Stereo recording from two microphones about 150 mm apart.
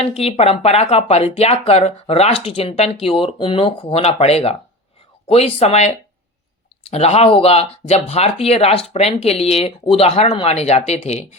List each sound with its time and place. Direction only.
0.0 s speech: 45° left (ahead or behind)